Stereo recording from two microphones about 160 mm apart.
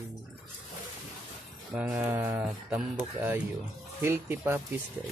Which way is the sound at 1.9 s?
15° right (ahead or behind).